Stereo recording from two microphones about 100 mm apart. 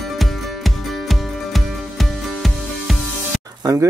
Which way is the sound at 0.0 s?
Centre (ahead or behind).